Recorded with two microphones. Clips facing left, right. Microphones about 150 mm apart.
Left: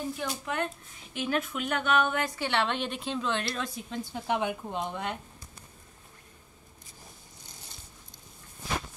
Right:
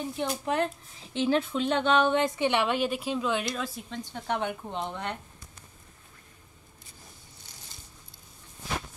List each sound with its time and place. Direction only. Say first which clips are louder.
0.1 s a woman's voice: right 4 dB; 30° right (ahead or behind); by 4.0 s 5° right (ahead or behind)
4.0 s speech: left 1 dB; 10° left (ahead or behind)